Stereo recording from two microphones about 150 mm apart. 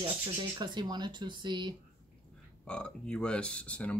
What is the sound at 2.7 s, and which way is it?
Speech, 5° left (ahead or behind).